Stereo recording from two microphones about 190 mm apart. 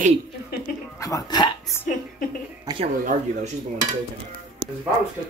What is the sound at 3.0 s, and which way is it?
Speech, 45° right (ahead or behind).